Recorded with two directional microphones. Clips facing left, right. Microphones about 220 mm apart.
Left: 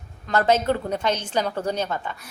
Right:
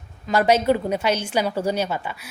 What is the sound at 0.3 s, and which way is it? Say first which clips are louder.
A woman's voice: right 2 dB; 10° right (ahead or behind).